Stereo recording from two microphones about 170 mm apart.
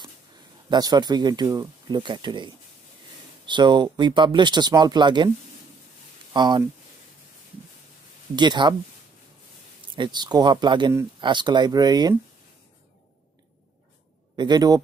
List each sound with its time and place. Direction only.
0.7 s speech: 25° right (ahead or behind)
6.3 s speech: 25° right (ahead or behind)
8.4 s speech: 25° right (ahead or behind)
9.9 s speech: 25° right (ahead or behind)
14.3 s a man's voice: 25° right (ahead or behind)